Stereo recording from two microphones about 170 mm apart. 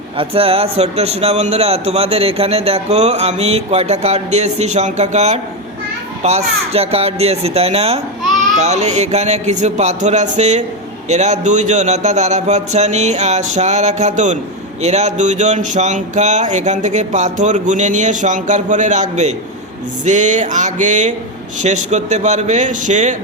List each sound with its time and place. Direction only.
0.2 s a man's voice: 35° right (ahead or behind)